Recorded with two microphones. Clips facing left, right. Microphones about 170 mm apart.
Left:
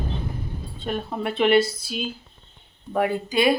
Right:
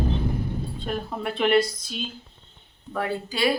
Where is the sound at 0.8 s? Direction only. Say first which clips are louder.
Left 4 dB; centre (ahead or behind).